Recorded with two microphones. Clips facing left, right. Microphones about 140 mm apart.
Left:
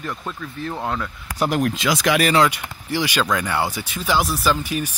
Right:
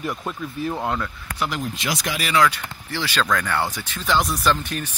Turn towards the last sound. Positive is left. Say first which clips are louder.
# left 1 dB
turn(degrees=10)  # may be behind; listen again after turning